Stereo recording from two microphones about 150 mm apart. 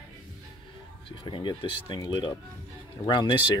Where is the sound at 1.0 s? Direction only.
35° left (ahead or behind).